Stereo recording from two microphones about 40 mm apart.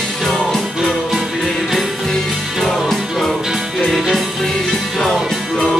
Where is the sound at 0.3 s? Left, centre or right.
Centre.